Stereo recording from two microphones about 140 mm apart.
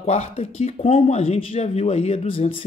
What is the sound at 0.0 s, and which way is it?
Speech, 50° left (ahead or behind).